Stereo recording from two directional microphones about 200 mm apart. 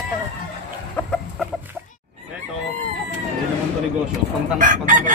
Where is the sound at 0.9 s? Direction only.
5° left (ahead or behind).